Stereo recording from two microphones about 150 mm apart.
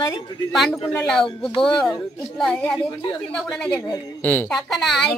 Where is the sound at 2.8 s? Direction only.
30° left (ahead or behind).